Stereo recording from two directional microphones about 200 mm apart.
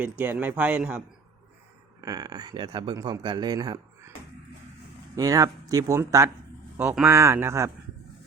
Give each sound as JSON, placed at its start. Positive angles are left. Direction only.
{"t": 0.0, "sound": "speech", "side_deg": -10}
{"t": 2.0, "sound": "speech", "side_deg": -20}
{"t": 5.1, "sound": "speech", "side_deg": -15}